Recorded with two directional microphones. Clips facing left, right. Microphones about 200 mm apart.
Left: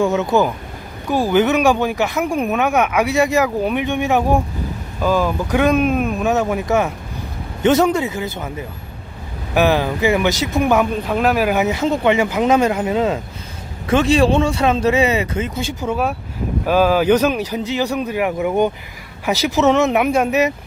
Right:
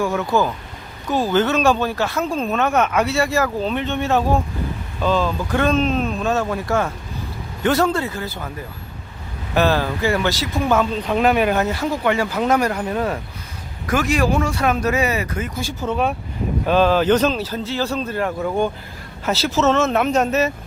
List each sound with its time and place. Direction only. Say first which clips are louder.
0.0 s speech: left 3 dB; 20° left (ahead or behind); by 11.5 s centre (ahead or behind)
11.5 s speech: left 3 dB; 20° left (ahead or behind)
15.9 s speech: right 1 dB; 5° left (ahead or behind)